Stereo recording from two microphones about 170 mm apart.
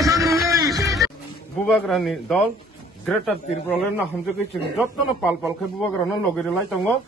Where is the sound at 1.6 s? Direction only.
Centre (ahead or behind).